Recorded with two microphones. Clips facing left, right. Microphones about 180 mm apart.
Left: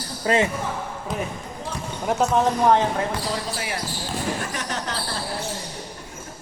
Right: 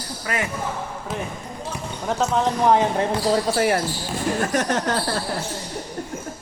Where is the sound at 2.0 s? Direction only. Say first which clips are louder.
Left 1 dB; 5° left (ahead or behind).